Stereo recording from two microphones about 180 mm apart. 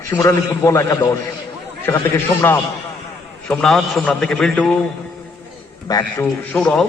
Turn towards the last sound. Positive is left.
turn(degrees=5)  # may be behind; listen again after turning